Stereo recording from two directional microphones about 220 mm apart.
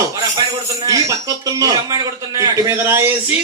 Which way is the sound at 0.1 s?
15° right (ahead or behind).